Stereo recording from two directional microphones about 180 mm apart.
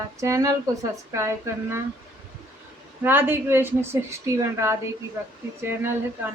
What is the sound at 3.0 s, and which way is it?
Speech, 10° right (ahead or behind).